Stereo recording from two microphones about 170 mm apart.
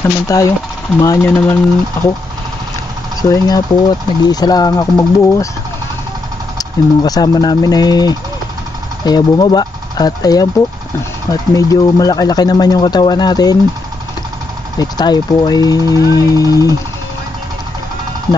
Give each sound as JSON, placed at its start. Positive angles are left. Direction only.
{"t": 0.0, "sound": "speech", "side_deg": 20}
{"t": 3.2, "sound": "speech", "side_deg": 20}
{"t": 6.6, "sound": "speech", "side_deg": 20}
{"t": 14.8, "sound": "speech", "side_deg": 25}